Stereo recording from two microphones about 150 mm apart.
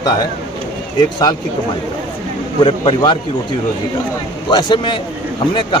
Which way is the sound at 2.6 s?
35° left (ahead or behind).